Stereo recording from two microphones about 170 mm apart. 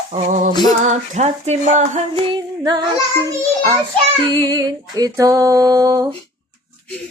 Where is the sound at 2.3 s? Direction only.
25° right (ahead or behind).